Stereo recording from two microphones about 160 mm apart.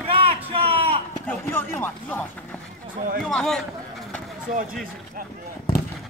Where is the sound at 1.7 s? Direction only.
10° left (ahead or behind).